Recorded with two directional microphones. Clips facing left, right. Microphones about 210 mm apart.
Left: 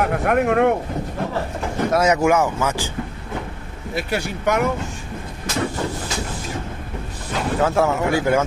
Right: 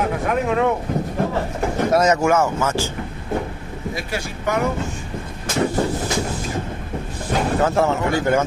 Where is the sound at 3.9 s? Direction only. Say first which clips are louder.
Left 8 dB; 65° left (ahead or behind).